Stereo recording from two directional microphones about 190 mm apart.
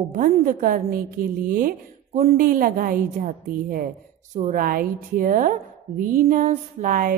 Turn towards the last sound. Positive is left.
turn(degrees=-50)  # may be behind; listen again after turning